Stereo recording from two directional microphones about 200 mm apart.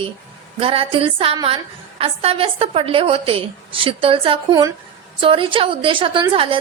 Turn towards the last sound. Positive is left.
turn(degrees=-25)  # may be behind; listen again after turning